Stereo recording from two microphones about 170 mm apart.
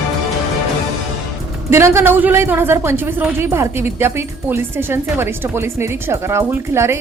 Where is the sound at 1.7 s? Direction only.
15° right (ahead or behind).